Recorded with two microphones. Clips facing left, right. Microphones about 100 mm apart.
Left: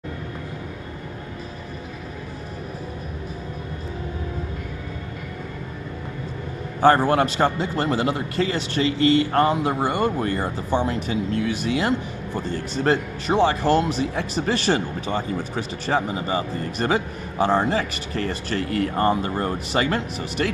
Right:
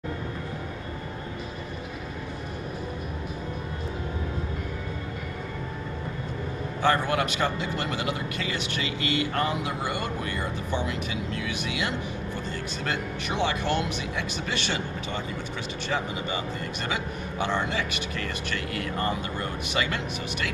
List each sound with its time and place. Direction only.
6.8 s speech: 35° left (ahead or behind)